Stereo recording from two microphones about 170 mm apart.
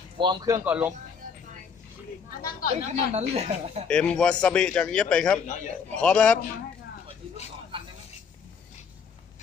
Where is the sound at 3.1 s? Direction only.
40° right (ahead or behind).